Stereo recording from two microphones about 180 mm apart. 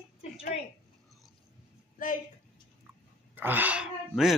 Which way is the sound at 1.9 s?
45° left (ahead or behind).